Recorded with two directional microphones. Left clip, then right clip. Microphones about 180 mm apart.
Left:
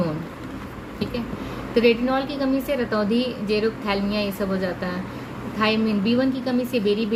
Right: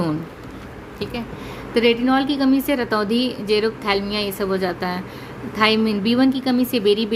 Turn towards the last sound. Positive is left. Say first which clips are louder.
# right 4 dB
turn(degrees=-50)  # may be behind; listen again after turning